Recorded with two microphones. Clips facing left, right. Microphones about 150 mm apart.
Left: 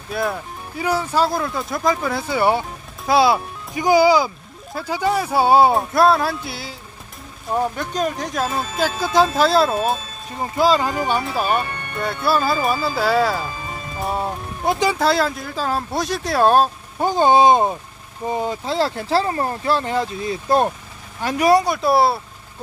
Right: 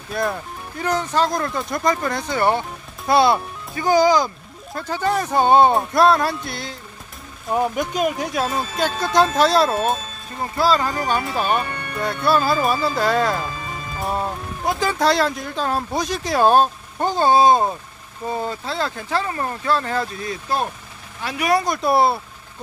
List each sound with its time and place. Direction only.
0.1 s speech: 5° left (ahead or behind)
7.5 s speech: 10° right (ahead or behind)
10.4 s speech: 15° left (ahead or behind)
11.0 s speech: 5° left (ahead or behind)
17.0 s speech: 15° left (ahead or behind)
18.8 s speech: 30° left (ahead or behind)
21.2 s speech: 45° left (ahead or behind)
21.6 s speech: centre (ahead or behind)